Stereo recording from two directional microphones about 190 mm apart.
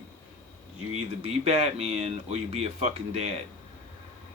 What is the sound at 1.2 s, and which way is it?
Speech, 35° right (ahead or behind).